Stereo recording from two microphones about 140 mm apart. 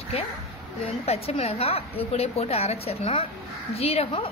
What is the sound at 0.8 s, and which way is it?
A woman's voice, 45° left (ahead or behind).